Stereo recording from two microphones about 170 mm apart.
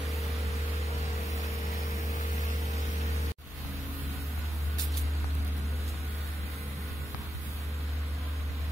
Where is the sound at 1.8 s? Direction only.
20° right (ahead or behind).